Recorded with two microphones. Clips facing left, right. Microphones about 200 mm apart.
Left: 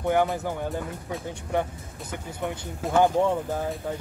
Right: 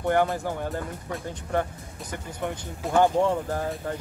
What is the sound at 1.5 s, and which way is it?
Speech, 15° left (ahead or behind).